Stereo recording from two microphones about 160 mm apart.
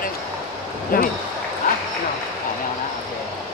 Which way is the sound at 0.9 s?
60° left (ahead or behind).